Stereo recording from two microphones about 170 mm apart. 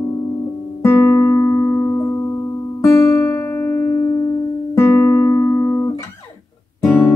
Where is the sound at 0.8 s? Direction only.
15° left (ahead or behind).